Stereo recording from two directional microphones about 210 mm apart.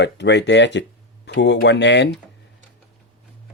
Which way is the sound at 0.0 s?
55° left (ahead or behind).